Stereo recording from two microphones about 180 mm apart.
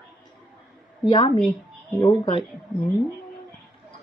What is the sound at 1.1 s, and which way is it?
Speech, 25° left (ahead or behind).